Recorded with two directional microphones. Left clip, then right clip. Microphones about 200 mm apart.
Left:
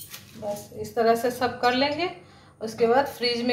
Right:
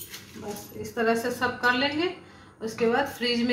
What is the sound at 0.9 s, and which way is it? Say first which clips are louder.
A woman's voice: left 4 dB; 35° left (ahead or behind).